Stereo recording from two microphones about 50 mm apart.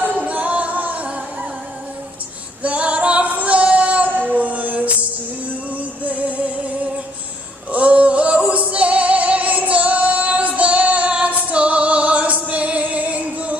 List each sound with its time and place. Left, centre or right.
0.0 s music: right
2.6 s female singing: right
4.3 s music: right
6.0 s music: right
7.7 s female singing: right